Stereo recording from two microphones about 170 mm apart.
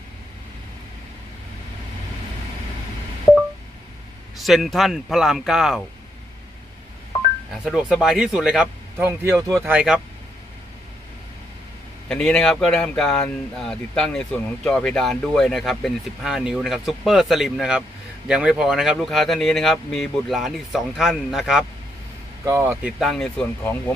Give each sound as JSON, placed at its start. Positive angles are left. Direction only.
{"t": 4.4, "sound": "speech", "side_deg": 0}
{"t": 7.6, "sound": "speech", "side_deg": -5}
{"t": 8.9, "sound": "speech", "side_deg": -15}
{"t": 9.7, "sound": "speech", "side_deg": -5}
{"t": 12.1, "sound": "speech", "side_deg": 5}
{"t": 22.4, "sound": "speech", "side_deg": -15}